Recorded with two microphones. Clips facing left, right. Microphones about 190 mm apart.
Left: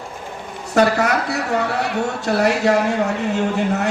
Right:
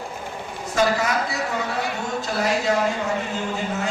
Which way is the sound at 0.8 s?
65° left (ahead or behind).